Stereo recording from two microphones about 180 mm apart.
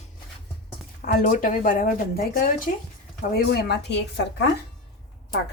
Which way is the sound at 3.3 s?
65° left (ahead or behind).